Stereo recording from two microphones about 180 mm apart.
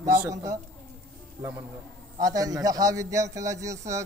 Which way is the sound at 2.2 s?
20° right (ahead or behind).